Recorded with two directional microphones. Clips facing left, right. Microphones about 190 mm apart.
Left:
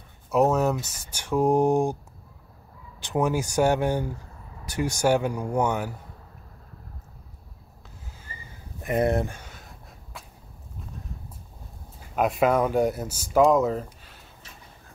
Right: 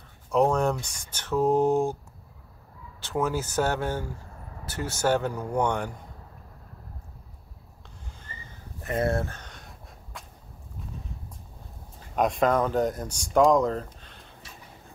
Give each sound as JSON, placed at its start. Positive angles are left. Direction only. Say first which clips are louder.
{"t": 0.3, "sound": "speech", "louder": "left 1 dB", "side_deg": 5}
{"t": 3.0, "sound": "speech", "louder": "left 3 dB", "side_deg": 15}
{"t": 8.2, "sound": "a sound", "louder": "left 1 dB", "side_deg": 10}
{"t": 12.2, "sound": "speech", "louder": "left 1 dB", "side_deg": 5}